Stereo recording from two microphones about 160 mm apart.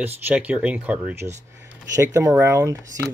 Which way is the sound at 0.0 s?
10° right (ahead or behind).